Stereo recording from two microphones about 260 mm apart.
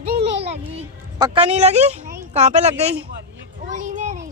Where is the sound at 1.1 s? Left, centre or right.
Centre.